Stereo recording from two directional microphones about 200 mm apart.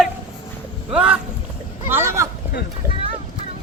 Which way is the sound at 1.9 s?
15° right (ahead or behind).